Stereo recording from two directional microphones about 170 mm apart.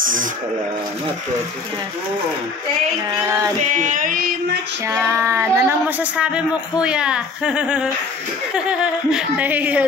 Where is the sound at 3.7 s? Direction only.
50° right (ahead or behind).